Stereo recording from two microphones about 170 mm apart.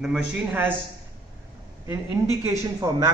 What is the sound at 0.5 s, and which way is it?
Speech, 10° right (ahead or behind).